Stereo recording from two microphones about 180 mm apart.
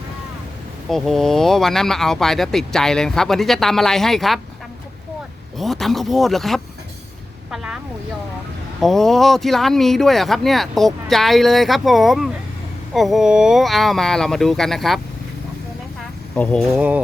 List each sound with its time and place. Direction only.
0.9 s speech: centre (ahead or behind)
5.5 s speech: centre (ahead or behind)
8.8 s speech: centre (ahead or behind)
16.3 s speech: 5° left (ahead or behind)